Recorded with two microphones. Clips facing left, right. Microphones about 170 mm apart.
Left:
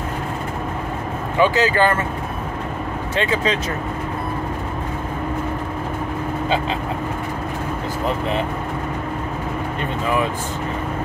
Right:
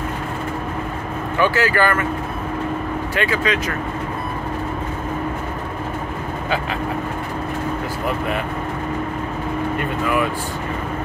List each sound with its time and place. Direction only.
1.4 s speech: 20° left (ahead or behind)
3.2 s speech: 25° left (ahead or behind)